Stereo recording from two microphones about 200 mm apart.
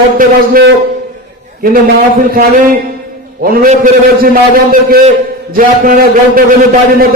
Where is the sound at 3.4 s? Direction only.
45° right (ahead or behind).